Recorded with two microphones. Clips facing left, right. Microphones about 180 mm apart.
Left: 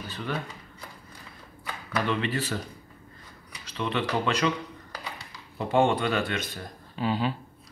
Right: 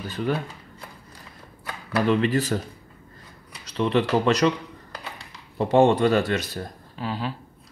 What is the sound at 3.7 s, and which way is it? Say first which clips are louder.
Speech: right 7 dB; 35° right (ahead or behind).